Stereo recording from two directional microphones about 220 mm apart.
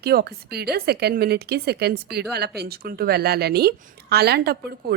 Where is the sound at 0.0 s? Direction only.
45° right (ahead or behind).